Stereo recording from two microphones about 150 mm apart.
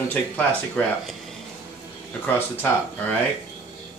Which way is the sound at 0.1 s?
10° left (ahead or behind).